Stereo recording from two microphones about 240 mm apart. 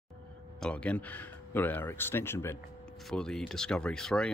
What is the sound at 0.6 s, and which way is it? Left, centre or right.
Speech, centre.